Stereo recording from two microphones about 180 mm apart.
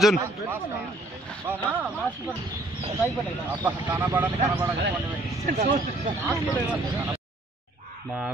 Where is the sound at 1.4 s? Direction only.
10° right (ahead or behind).